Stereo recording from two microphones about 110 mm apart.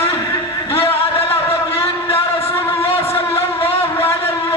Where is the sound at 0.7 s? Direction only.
60° left (ahead or behind).